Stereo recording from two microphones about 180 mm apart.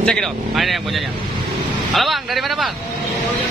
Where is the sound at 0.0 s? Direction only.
5° left (ahead or behind).